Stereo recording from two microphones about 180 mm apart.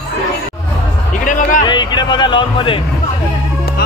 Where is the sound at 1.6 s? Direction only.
25° left (ahead or behind).